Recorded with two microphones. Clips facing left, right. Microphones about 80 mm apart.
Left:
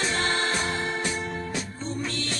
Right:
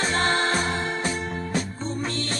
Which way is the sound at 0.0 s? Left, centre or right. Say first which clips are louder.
Right 3 dB; right.